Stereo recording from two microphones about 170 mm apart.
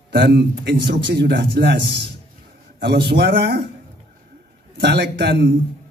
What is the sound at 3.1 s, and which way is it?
Speech, 75° right (ahead or behind).